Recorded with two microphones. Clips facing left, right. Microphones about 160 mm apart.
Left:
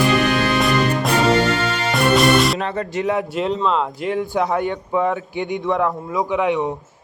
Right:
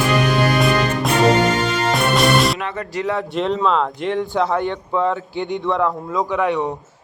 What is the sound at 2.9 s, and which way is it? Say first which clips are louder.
Speech: left 1 dB; 20° left (ahead or behind).